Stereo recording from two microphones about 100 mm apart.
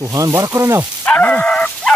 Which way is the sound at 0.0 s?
35° right (ahead or behind).